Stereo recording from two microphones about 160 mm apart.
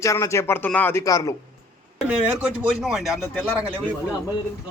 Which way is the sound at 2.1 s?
5° right (ahead or behind).